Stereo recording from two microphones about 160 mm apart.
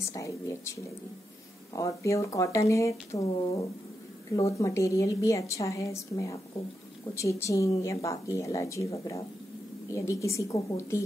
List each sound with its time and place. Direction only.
0.1 s a woman's voice: 20° left (ahead or behind)
1.8 s a woman's voice: 20° left (ahead or behind)